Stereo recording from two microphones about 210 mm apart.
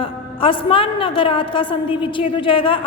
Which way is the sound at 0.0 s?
25° left (ahead or behind).